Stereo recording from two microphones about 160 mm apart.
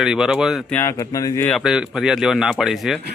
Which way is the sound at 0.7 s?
20° left (ahead or behind).